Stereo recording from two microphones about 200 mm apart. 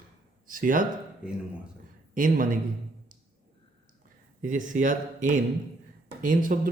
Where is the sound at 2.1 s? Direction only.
40° right (ahead or behind).